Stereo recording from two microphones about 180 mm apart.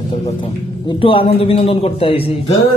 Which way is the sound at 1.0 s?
30° left (ahead or behind).